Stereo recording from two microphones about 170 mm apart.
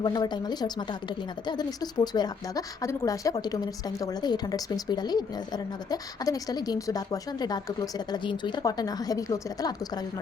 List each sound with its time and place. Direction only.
0.0 s a woman's voice: 25° left (ahead or behind)